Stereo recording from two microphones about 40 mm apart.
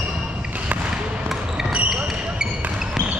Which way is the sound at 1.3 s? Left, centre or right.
Centre.